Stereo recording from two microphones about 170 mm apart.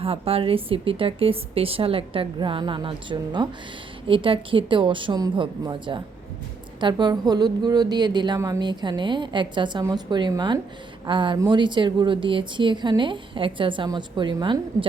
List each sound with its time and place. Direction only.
0.0 s a woman's voice: 35° right (ahead or behind)